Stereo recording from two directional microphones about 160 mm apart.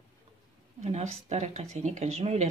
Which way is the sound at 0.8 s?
40° right (ahead or behind).